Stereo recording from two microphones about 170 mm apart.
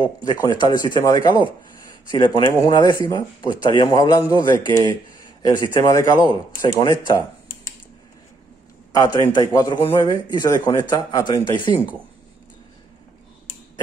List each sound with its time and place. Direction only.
0.0 s a man's voice: 25° left (ahead or behind)
8.9 s a man's voice: 25° left (ahead or behind)